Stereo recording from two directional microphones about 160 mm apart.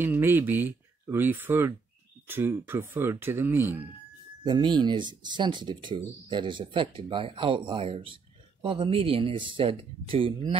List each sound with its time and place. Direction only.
0.0 s speech: 15° right (ahead or behind)
4.5 s speech: 30° right (ahead or behind)